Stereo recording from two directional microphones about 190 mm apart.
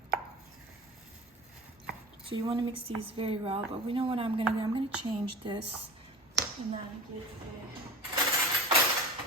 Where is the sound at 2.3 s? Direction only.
25° right (ahead or behind).